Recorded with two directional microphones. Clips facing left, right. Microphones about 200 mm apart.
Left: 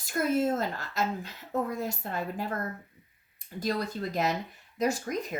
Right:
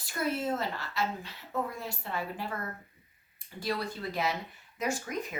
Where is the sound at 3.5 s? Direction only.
40° left (ahead or behind).